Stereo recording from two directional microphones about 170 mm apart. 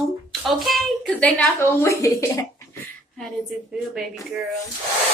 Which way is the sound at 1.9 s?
20° left (ahead or behind).